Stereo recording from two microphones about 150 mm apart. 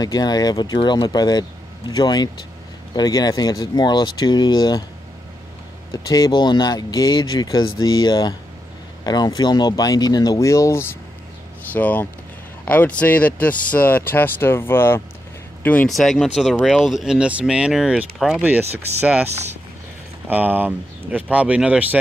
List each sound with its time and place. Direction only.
0.0 s speech: 25° left (ahead or behind)
6.0 s speech: 25° left (ahead or behind)
15.9 s speech: centre (ahead or behind)
20.2 s speech: 10° right (ahead or behind)